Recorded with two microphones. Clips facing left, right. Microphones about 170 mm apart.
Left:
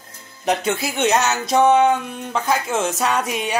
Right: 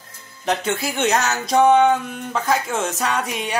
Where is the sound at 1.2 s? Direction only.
Centre (ahead or behind).